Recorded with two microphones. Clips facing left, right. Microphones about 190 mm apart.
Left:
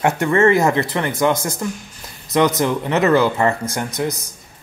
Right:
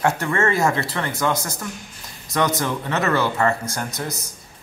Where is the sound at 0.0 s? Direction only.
20° left (ahead or behind).